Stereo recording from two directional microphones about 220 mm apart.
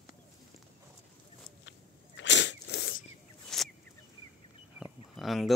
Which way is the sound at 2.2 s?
55° left (ahead or behind).